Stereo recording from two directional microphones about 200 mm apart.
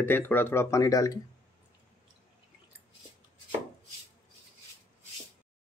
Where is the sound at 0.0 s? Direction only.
10° left (ahead or behind).